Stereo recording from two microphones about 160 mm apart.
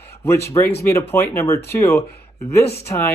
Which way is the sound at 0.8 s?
15° left (ahead or behind).